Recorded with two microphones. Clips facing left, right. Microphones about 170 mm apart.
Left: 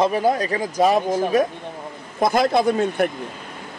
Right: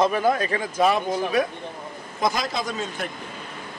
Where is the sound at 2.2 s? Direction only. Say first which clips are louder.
Left 8 dB; 55° left (ahead or behind).